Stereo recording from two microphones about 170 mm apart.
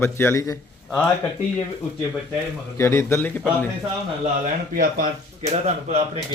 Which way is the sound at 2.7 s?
15° left (ahead or behind).